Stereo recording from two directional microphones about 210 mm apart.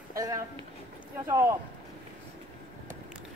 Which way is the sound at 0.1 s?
15° right (ahead or behind).